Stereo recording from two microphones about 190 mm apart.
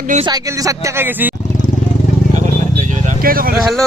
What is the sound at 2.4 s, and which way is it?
Vehicle, 40° right (ahead or behind).